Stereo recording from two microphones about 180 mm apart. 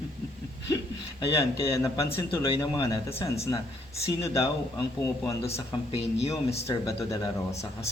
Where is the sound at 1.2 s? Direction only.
20° left (ahead or behind).